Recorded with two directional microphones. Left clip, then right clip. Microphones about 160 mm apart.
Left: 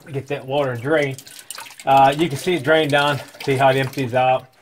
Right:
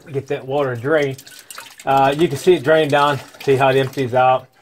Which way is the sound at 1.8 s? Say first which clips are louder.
Left 1 dB; 40° right (ahead or behind).